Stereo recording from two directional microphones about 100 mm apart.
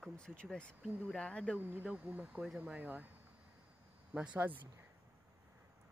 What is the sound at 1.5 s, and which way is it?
Speech, 20° right (ahead or behind).